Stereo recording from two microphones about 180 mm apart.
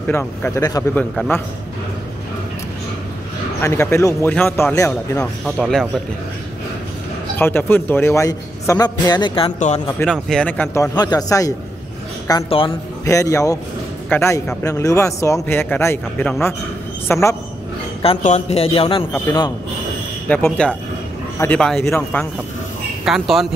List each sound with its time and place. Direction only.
0.0 s speech: 10° left (ahead or behind)
0.6 s a man's voice: 20° left (ahead or behind)
0.9 s a man's voice: 5° left (ahead or behind)
3.6 s speech: 15° left (ahead or behind)
5.2 s a man's voice: centre (ahead or behind)
7.3 s speech: 10° left (ahead or behind); by 9.5 s 25° left (ahead or behind)
10.0 s speech: centre (ahead or behind); by 11.5 s 20° left (ahead or behind)
12.4 s a man's voice: 30° left (ahead or behind)
13.0 s speech: 15° left (ahead or behind)
18.2 s a man's voice: 35° left (ahead or behind)
20.2 s a man's voice: 5° left (ahead or behind)